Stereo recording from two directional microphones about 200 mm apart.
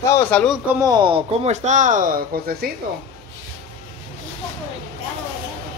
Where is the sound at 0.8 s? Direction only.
20° right (ahead or behind); by 2.6 s 45° right (ahead or behind).